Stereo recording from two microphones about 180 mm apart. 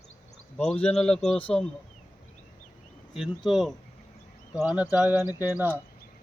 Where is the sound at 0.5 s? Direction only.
5° left (ahead or behind).